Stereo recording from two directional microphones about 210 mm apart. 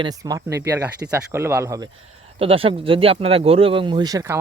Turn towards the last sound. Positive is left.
turn(degrees=-15)  # may be behind; listen again after turning